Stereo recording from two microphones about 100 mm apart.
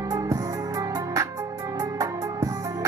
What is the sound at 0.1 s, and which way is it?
Music, 35° right (ahead or behind).